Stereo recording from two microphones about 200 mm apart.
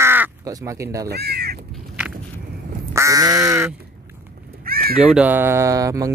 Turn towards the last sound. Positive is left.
turn(degrees=-15)  # may be behind; listen again after turning